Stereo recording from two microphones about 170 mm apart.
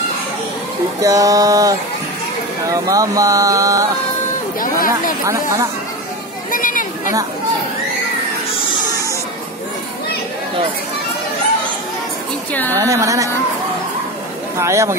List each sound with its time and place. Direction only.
1.0 s speech: 20° right (ahead or behind)
4.6 s a sound: 55° left (ahead or behind)
5.2 s speech: 20° right (ahead or behind)
6.5 s a sound: 50° left (ahead or behind)
12.7 s speech: 20° right (ahead or behind)
14.6 s speech: 15° right (ahead or behind)